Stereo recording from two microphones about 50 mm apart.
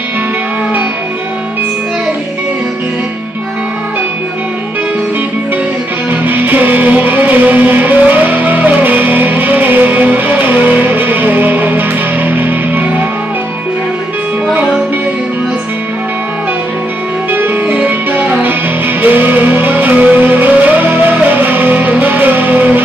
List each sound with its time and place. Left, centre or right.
6.2 s music: right
17.3 s music: right